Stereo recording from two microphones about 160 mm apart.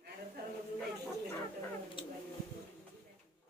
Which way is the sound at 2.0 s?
35° left (ahead or behind).